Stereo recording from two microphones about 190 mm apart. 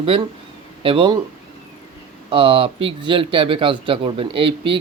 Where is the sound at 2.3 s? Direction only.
30° right (ahead or behind).